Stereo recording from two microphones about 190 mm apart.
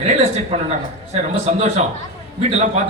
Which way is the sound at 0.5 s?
35° right (ahead or behind).